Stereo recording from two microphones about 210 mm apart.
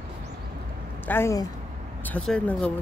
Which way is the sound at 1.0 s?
10° left (ahead or behind).